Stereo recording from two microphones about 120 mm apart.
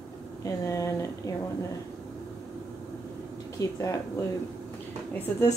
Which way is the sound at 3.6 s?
25° left (ahead or behind).